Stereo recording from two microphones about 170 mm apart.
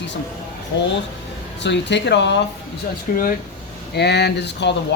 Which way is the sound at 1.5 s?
90° left.